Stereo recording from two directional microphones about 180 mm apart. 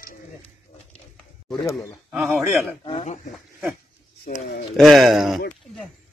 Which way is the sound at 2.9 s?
35° left (ahead or behind).